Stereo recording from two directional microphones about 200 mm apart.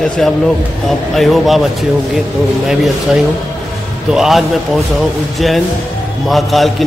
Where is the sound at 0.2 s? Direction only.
Centre (ahead or behind).